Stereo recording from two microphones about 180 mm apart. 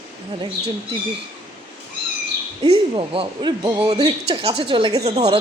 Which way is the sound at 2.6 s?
25° right (ahead or behind).